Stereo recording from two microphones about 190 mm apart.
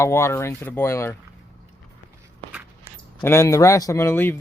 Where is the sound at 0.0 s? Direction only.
15° left (ahead or behind).